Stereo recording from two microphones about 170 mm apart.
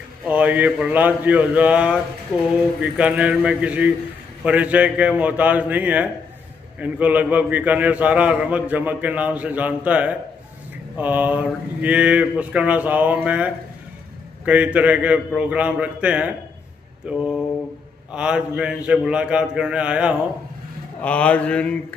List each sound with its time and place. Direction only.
0.2 s a man's voice: 10° right (ahead or behind)
21.0 s speech: 10° left (ahead or behind)